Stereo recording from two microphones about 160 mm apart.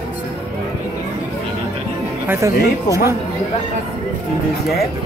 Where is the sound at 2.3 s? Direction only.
20° right (ahead or behind).